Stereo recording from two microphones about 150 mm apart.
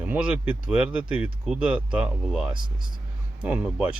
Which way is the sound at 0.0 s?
10° right (ahead or behind).